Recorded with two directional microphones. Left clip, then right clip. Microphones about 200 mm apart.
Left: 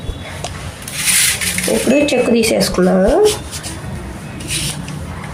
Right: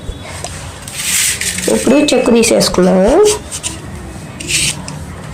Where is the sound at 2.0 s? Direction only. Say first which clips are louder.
Right 3 dB; 35° right (ahead or behind).